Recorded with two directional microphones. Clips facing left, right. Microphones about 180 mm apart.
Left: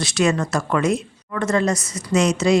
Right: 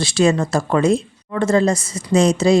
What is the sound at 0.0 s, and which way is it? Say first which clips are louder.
Speech: right 3 dB; 30° right (ahead or behind).